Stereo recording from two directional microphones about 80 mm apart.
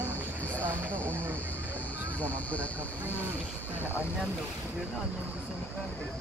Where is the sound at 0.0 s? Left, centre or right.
Left.